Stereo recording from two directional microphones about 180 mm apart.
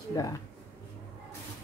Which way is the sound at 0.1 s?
20° left (ahead or behind).